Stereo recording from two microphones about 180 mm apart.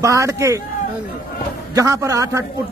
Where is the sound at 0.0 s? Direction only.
15° right (ahead or behind).